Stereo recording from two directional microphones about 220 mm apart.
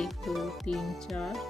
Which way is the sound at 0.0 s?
Centre (ahead or behind).